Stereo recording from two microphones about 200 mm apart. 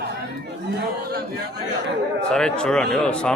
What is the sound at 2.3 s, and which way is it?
Speech, 5° left (ahead or behind).